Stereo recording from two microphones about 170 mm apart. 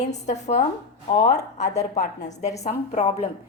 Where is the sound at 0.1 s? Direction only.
40° left (ahead or behind).